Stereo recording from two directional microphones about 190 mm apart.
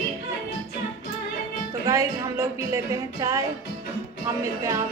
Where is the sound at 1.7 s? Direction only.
15° right (ahead or behind).